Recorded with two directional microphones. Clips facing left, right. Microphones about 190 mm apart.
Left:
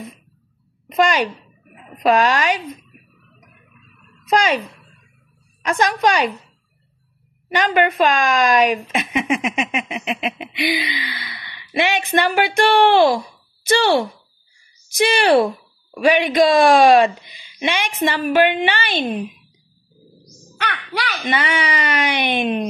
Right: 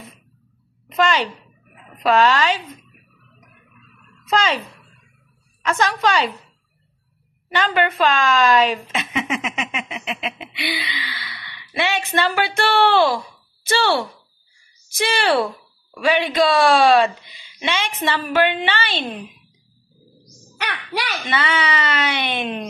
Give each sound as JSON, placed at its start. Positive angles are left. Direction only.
{"t": 0.8, "sound": "laughter", "side_deg": 15}
{"t": 4.3, "sound": "speech", "side_deg": 15}
{"t": 5.6, "sound": "laughter", "side_deg": 15}
{"t": 7.4, "sound": "laughter", "side_deg": 15}
{"t": 21.3, "sound": "laughter", "side_deg": 15}